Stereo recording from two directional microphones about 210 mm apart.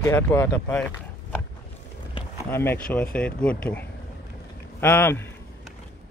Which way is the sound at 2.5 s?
10° left (ahead or behind).